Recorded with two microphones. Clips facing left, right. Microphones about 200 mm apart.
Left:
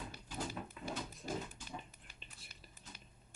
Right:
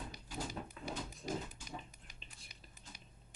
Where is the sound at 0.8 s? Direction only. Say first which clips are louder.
Even; 5° left (ahead or behind).